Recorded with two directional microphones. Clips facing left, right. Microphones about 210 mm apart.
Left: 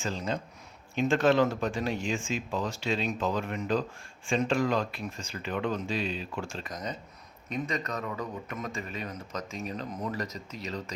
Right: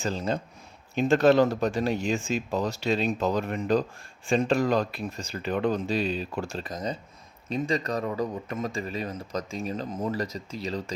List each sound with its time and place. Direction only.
0.0 s speech: 35° right (ahead or behind)